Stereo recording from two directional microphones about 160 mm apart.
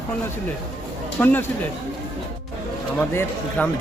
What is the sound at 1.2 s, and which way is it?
Speech, 10° left (ahead or behind).